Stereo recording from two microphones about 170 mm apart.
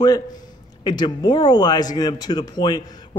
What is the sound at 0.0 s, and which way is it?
A man's voice, 25° left (ahead or behind).